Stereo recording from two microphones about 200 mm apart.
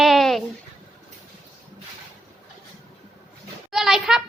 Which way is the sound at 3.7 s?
Centre (ahead or behind).